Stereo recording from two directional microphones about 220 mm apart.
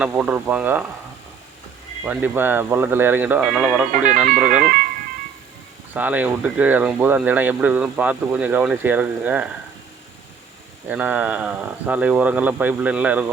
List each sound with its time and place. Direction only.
0.0 s speech: 5° right (ahead or behind)
2.0 s speech: 10° right (ahead or behind)
3.9 s speech: 35° right (ahead or behind)
5.9 s speech: 5° right (ahead or behind)
10.8 s speech: 5° right (ahead or behind)